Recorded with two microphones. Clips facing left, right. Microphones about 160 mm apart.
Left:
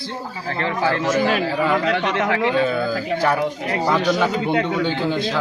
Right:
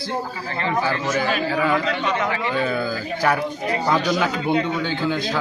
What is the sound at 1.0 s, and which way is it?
A man's voice, 75° left (ahead or behind).